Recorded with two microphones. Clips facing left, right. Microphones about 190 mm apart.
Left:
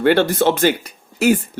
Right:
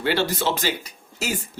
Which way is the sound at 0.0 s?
55° left (ahead or behind).